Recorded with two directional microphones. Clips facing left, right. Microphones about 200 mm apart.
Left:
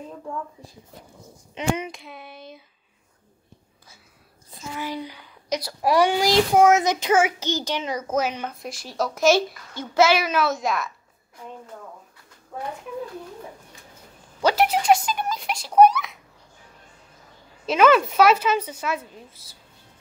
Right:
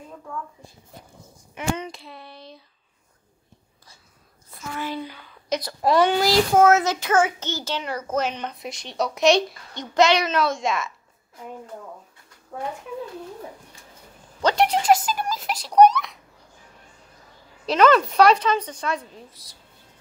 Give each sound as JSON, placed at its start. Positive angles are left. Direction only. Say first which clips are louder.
{"t": 1.5, "sound": "a child's voice", "louder": "left 2 dB", "side_deg": 20}
{"t": 1.9, "sound": "a woman's voice", "louder": "left 1 dB", "side_deg": 0}
{"t": 4.7, "sound": "a child's voice", "louder": "right 1 dB", "side_deg": 15}
{"t": 14.4, "sound": "a sound", "louder": "even", "side_deg": 5}
{"t": 17.6, "sound": "a woman's voice", "louder": "even", "side_deg": 5}